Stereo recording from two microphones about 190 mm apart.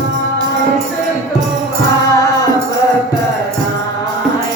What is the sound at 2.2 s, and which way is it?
Music, 20° left (ahead or behind).